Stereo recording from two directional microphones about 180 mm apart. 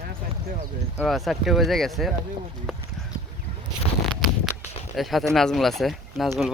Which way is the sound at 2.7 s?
Centre (ahead or behind).